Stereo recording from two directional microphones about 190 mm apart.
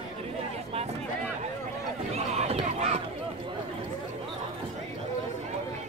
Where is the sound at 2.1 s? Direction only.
35° right (ahead or behind).